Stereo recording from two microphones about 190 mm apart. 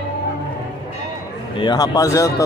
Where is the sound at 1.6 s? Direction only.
20° left (ahead or behind).